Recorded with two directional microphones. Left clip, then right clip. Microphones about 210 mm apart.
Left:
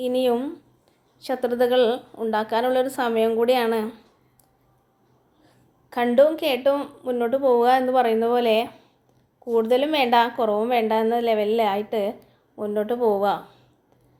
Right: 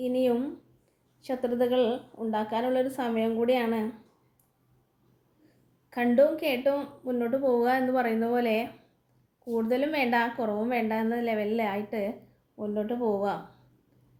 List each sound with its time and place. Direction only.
0.0 s a woman's voice: 20° left (ahead or behind)
5.9 s speech: 20° left (ahead or behind)
9.6 s a woman's voice: 20° left (ahead or behind)
13.0 s a woman's voice: 40° left (ahead or behind)